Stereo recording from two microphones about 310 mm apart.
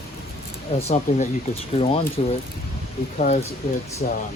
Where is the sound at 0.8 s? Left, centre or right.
Left.